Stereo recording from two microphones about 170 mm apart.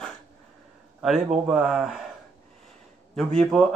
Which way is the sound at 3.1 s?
5° left (ahead or behind).